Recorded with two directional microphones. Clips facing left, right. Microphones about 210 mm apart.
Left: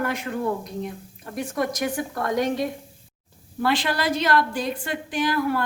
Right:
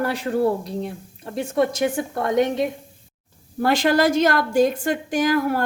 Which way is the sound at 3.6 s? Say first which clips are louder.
Right 6 dB; 45° right (ahead or behind).